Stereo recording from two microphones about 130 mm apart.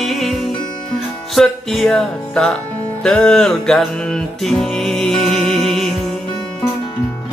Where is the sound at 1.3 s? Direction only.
Centre (ahead or behind).